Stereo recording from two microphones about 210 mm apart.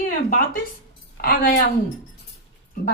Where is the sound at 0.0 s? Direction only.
40° left (ahead or behind).